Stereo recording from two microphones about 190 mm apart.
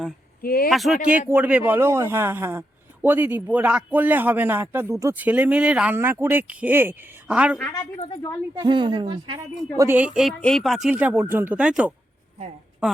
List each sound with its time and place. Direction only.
0.4 s speech: 50° left (ahead or behind)
0.7 s a man's voice: centre (ahead or behind)
7.6 s a woman's voice: 20° left (ahead or behind)
7.9 s a woman's voice: 30° left (ahead or behind)
8.5 s speech: 25° right (ahead or behind)
9.7 s a man's voice: 10° right (ahead or behind)